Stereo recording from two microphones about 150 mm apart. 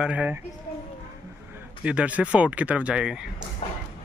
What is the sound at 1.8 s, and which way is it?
Speech, 10° right (ahead or behind).